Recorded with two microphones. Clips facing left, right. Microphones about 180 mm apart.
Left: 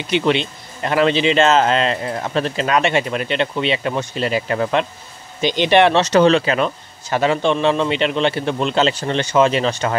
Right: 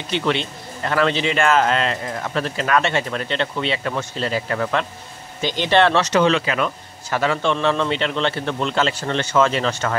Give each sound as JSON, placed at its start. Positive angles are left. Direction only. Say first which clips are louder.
{"t": 0.1, "sound": "a man's voice", "louder": "left 4 dB", "side_deg": 20}
{"t": 6.0, "sound": "a man's voice", "louder": "left 4 dB", "side_deg": 35}